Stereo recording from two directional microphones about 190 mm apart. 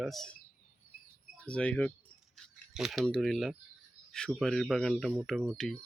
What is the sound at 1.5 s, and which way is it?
Speech, 5° left (ahead or behind).